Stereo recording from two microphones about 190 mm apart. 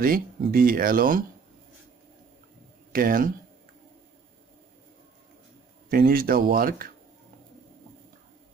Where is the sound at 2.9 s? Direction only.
50° right (ahead or behind).